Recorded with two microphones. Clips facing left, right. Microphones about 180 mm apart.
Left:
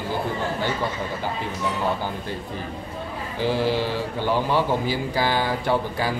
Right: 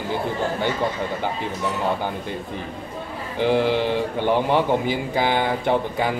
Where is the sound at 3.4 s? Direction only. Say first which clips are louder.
Right 3 dB; 20° right (ahead or behind).